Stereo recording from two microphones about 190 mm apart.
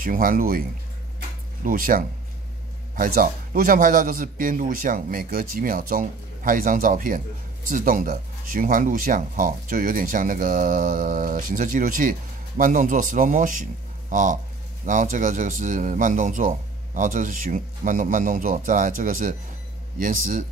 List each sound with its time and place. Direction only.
0.0 s speech: 45° right (ahead or behind)
1.6 s speech: 45° right (ahead or behind)